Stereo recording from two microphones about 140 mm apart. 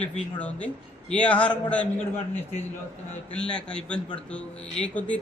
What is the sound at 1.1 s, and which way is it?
Speech, 10° left (ahead or behind).